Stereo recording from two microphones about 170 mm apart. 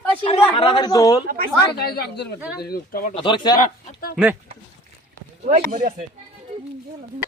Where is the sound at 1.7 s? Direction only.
70° left (ahead or behind).